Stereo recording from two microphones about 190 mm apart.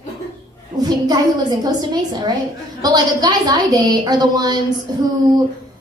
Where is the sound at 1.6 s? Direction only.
20° right (ahead or behind).